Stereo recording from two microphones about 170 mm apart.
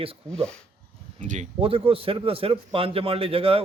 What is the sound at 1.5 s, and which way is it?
A man's voice, 35° right (ahead or behind).